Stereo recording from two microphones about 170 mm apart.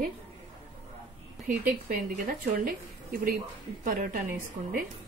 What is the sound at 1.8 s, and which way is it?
A woman's voice, 55° right (ahead or behind).